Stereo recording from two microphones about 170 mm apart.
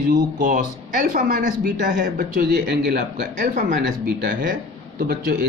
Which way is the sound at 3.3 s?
50° right (ahead or behind).